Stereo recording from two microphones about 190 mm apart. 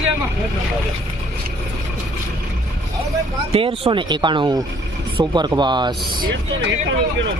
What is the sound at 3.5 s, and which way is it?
Speech, 30° right (ahead or behind).